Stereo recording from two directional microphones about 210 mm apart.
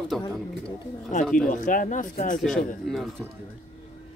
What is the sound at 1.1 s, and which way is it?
Speech, 35° left (ahead or behind).